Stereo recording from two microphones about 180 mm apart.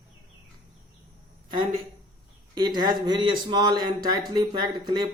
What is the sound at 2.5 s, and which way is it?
Speech, 25° right (ahead or behind).